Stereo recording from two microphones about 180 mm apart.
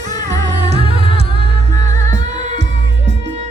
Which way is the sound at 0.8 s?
35° right (ahead or behind).